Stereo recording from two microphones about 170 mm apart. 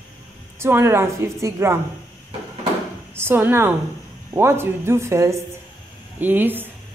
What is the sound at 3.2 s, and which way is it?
A woman's voice, 15° right (ahead or behind).